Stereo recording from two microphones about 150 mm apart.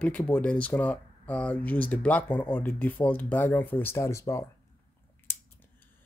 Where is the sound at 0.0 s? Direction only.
10° left (ahead or behind).